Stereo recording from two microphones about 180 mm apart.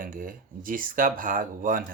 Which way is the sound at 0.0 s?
50° right (ahead or behind).